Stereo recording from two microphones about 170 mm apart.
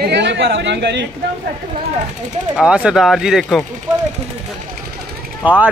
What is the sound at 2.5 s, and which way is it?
Speech, 5° right (ahead or behind).